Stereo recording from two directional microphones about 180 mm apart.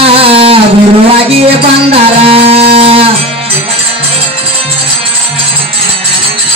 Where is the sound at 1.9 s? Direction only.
35° right (ahead or behind).